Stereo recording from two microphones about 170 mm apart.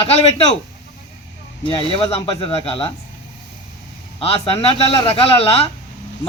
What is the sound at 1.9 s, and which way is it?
A man's voice, 35° left (ahead or behind).